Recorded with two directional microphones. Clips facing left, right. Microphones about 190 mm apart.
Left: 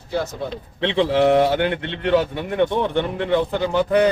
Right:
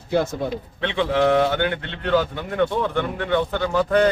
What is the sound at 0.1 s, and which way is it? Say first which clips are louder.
Speech: right 3 dB; 50° right (ahead or behind).